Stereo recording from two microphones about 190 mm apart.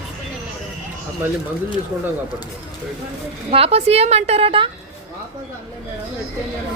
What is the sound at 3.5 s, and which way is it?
A woman's voice, 30° right (ahead or behind).